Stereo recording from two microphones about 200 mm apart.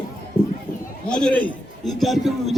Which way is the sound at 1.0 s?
5° left (ahead or behind).